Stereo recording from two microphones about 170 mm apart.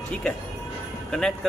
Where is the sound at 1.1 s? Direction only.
Centre (ahead or behind).